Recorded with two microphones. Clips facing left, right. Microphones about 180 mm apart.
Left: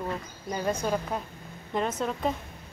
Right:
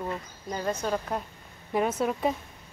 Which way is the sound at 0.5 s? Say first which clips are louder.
Left 1 dB; 10° left (ahead or behind).